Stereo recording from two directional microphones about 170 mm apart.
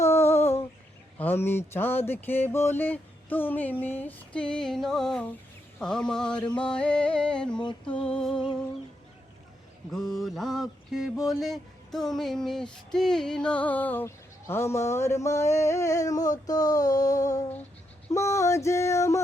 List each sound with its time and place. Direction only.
0.0 s a sound: 15° left (ahead or behind)
1.2 s mantra: 10° left (ahead or behind)
5.8 s music: 5° left (ahead or behind)
9.9 s mantra: centre (ahead or behind); by 19.2 s 15° left (ahead or behind)